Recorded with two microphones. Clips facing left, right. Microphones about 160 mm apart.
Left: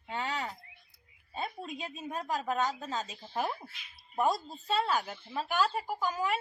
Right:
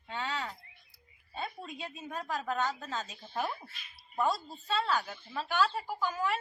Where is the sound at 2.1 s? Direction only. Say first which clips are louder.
Left 2 dB; 15° left (ahead or behind).